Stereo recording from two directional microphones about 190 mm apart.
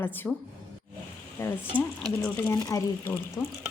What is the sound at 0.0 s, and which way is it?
Speech, 10° left (ahead or behind).